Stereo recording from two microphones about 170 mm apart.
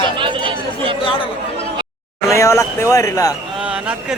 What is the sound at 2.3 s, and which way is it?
Speech, 15° left (ahead or behind).